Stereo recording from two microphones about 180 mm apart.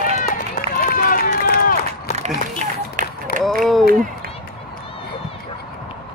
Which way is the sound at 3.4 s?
Centre (ahead or behind).